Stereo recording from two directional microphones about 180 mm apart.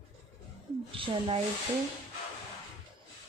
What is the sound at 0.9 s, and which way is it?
Speech, 30° right (ahead or behind).